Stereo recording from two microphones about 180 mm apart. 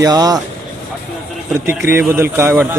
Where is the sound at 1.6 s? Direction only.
15° right (ahead or behind).